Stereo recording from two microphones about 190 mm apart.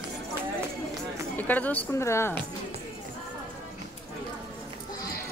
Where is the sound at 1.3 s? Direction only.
10° left (ahead or behind).